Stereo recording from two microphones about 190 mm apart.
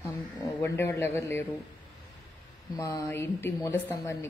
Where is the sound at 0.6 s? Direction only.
15° left (ahead or behind).